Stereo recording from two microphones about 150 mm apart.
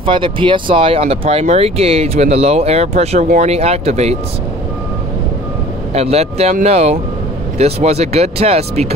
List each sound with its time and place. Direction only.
0.0 s speech: 35° right (ahead or behind)
5.9 s speech: 45° right (ahead or behind)